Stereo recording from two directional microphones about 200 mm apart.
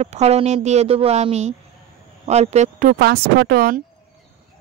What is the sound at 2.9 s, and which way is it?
Speech, 50° right (ahead or behind).